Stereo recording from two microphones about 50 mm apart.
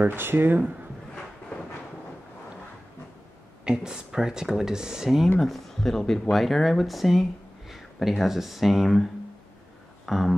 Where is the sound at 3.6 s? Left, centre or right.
Centre.